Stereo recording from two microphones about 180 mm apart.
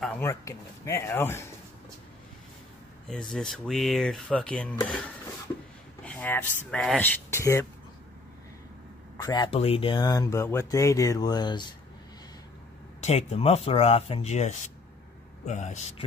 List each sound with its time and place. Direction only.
0.0 s speech: 10° left (ahead or behind)
3.1 s speech: 5° left (ahead or behind)
6.0 s speech: 10° left (ahead or behind)
9.2 s speech: 25° left (ahead or behind)
13.0 s speech: 35° left (ahead or behind)